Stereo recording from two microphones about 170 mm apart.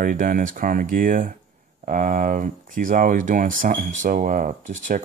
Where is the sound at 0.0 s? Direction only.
55° right (ahead or behind).